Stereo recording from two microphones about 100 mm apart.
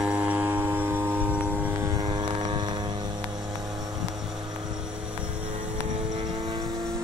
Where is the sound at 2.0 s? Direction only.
55° right (ahead or behind).